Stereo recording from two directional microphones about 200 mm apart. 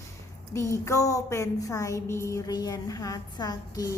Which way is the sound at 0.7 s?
15° left (ahead or behind).